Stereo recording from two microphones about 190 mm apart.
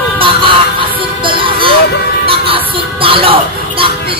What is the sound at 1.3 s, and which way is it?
Music, 25° right (ahead or behind).